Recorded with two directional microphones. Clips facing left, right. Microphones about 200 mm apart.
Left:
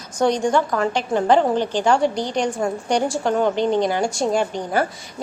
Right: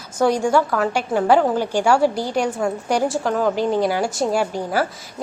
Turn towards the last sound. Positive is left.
turn(degrees=-5)  # may be behind; listen again after turning